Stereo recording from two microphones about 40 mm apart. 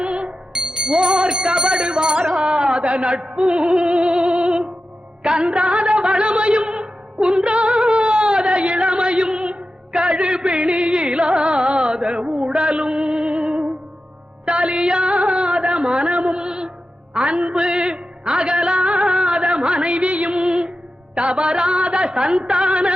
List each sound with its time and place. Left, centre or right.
0.0 s music: right
15.7 s a woman's voice: right
17.2 s music: right